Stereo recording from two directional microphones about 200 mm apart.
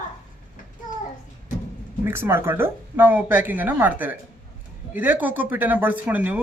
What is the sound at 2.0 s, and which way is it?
Speech, 10° right (ahead or behind).